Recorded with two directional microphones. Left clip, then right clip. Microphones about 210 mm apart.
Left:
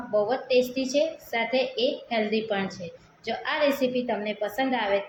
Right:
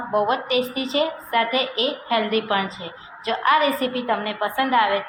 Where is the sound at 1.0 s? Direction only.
15° right (ahead or behind).